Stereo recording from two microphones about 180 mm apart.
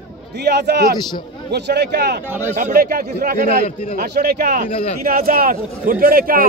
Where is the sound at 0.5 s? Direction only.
65° right (ahead or behind).